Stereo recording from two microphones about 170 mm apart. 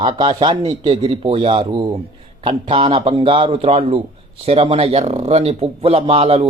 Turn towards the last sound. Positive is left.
turn(degrees=-35)  # may be behind; listen again after turning